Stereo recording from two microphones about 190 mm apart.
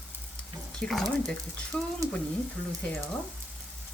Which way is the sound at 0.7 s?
5° left (ahead or behind).